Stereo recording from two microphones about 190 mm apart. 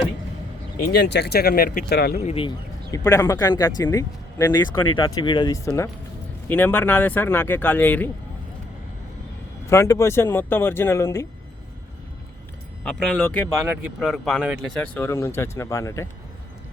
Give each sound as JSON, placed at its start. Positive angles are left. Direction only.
{"t": 0.9, "sound": "speech", "side_deg": 60}
{"t": 2.1, "sound": "speech", "side_deg": 35}
{"t": 2.9, "sound": "speech", "side_deg": 15}
{"t": 9.6, "sound": "speech", "side_deg": 15}
{"t": 12.8, "sound": "speech", "side_deg": 5}